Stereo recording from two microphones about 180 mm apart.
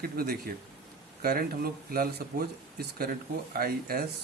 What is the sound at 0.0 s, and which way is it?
Speech, 55° right (ahead or behind).